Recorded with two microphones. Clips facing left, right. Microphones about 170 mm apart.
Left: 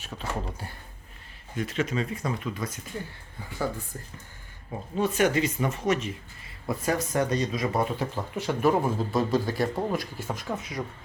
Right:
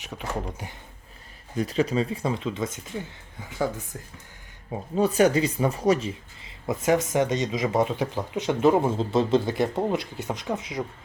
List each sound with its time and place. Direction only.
0.2 s speech: 15° right (ahead or behind)
1.5 s speech: 35° right (ahead or behind)
4.9 s speech: 35° right (ahead or behind)
6.7 s speech: 20° right (ahead or behind)